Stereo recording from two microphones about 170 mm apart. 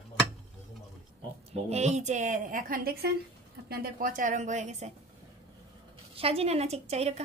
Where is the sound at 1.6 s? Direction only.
40° right (ahead or behind).